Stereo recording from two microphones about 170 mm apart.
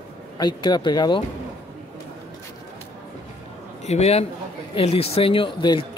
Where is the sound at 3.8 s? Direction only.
40° left (ahead or behind).